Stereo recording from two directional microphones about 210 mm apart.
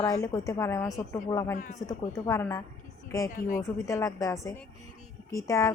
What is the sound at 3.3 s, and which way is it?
Speech, 40° left (ahead or behind).